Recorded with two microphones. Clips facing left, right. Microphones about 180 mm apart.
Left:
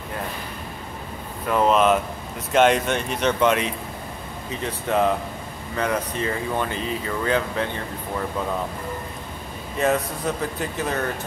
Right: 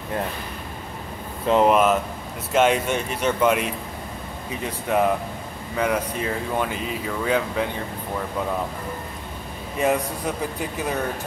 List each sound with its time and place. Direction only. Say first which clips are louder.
1.5 s speech: right 2 dB; 20° right (ahead or behind)
2.5 s speech: left 1 dB; 5° right (ahead or behind)
4.6 s speech: even; 10° right (ahead or behind)
9.8 s speech: even; 10° right (ahead or behind)